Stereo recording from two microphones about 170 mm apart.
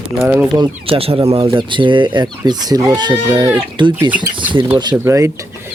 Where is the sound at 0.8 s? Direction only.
35° right (ahead or behind); by 3.5 s 15° right (ahead or behind).